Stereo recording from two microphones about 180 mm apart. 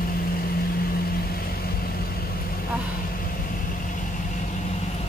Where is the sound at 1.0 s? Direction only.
55° left (ahead or behind).